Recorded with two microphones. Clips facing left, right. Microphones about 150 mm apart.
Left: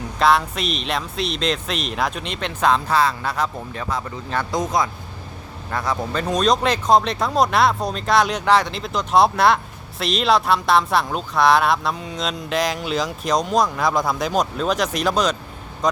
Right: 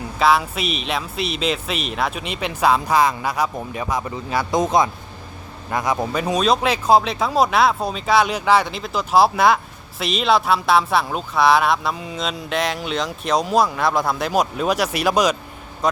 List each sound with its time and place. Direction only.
0.2 s speech: 5° right (ahead or behind)